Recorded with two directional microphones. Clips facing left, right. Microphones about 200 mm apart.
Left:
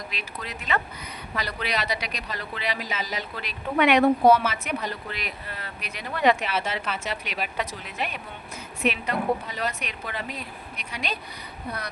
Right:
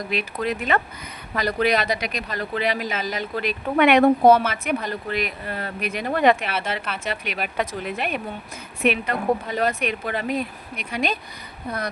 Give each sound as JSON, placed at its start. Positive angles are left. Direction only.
{"t": 0.1, "sound": "speech", "side_deg": -55}